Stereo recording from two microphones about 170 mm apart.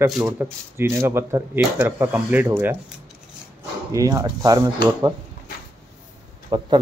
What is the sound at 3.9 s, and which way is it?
Speech, 20° right (ahead or behind).